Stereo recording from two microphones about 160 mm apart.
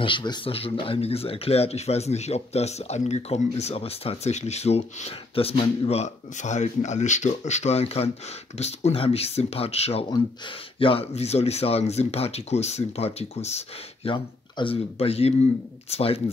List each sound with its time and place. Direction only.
0.0 s speech: 30° left (ahead or behind)